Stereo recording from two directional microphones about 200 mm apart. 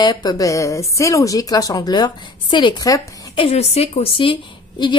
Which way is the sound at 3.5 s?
30° left (ahead or behind).